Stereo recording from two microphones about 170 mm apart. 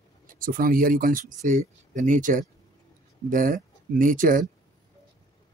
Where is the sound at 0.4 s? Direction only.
55° right (ahead or behind).